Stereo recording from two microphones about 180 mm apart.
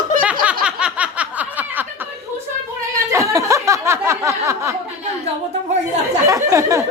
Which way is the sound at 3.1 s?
15° right (ahead or behind).